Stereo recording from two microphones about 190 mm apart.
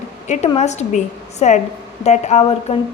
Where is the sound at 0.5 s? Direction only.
35° left (ahead or behind).